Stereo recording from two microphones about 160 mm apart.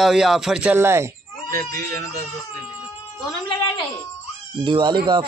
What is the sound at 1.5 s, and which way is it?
Speech, 70° right (ahead or behind).